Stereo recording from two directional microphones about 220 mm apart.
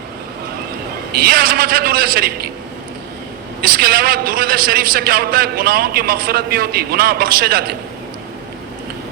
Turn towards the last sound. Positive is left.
turn(degrees=-45)  # may be behind; listen again after turning